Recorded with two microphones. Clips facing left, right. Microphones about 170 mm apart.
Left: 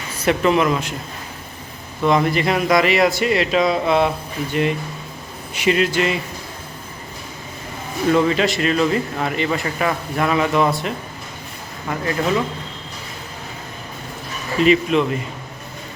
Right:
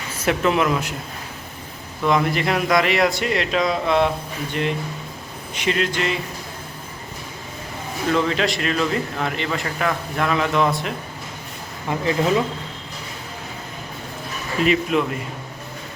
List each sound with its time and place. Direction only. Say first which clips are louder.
0.3 s a man's voice: left 3 dB; centre (ahead or behind)
2.0 s a man's voice: left 2 dB; centre (ahead or behind)
8.1 s a man's voice: left 3 dB; 5° left (ahead or behind)
11.9 s speech: right 1 dB; 20° right (ahead or behind)
14.6 s a man's voice: left 4 dB; 5° right (ahead or behind)